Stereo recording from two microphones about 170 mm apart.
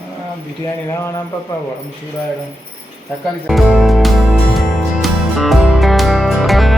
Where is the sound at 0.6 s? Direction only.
15° left (ahead or behind).